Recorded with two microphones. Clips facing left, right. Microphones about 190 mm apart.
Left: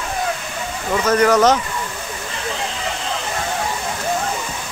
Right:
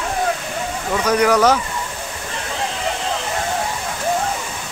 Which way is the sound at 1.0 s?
10° right (ahead or behind).